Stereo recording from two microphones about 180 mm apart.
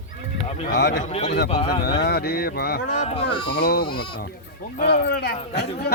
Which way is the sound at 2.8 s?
40° left (ahead or behind).